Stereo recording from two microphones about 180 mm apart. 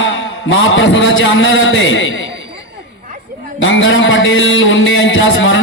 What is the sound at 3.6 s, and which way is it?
A man's voice, 90° left.